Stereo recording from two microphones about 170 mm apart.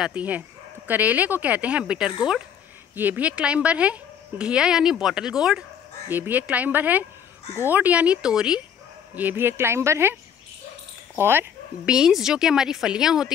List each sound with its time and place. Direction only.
0.0 s speech: 10° right (ahead or behind)
11.1 s speech: 15° right (ahead or behind)